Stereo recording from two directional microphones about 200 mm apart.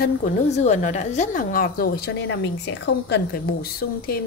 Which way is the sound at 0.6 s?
35° left (ahead or behind).